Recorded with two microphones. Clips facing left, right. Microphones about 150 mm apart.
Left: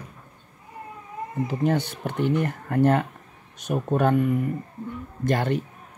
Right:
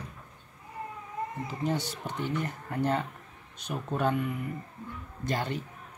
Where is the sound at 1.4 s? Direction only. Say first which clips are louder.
Left 9 dB; 60° left (ahead or behind).